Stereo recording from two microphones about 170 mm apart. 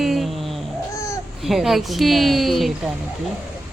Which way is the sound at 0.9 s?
15° left (ahead or behind).